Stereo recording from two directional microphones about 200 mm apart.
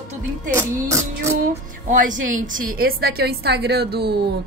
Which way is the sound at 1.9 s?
40° right (ahead or behind).